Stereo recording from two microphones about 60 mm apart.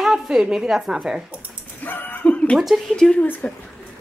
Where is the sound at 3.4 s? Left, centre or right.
Left.